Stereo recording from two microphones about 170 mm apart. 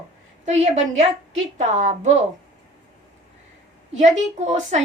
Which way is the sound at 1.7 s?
45° right (ahead or behind).